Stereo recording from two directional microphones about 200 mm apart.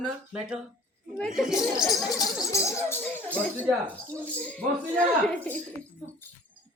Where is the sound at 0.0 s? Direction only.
5° right (ahead or behind).